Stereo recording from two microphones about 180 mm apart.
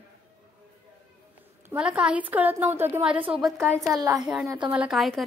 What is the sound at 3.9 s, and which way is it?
Speech, 20° right (ahead or behind).